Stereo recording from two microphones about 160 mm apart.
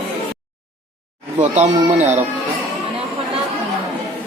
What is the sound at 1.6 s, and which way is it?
Speech, 45° right (ahead or behind).